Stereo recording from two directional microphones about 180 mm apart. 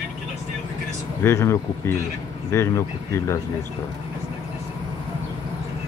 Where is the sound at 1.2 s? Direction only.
15° left (ahead or behind).